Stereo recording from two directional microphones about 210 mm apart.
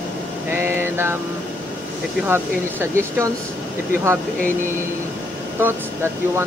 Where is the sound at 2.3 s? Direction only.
10° right (ahead or behind).